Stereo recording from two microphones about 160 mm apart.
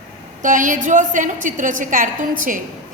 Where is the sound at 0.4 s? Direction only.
55° right (ahead or behind).